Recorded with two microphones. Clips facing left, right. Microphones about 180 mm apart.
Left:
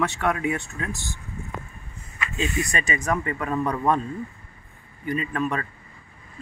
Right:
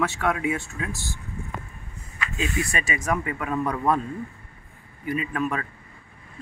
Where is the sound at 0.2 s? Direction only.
5° right (ahead or behind).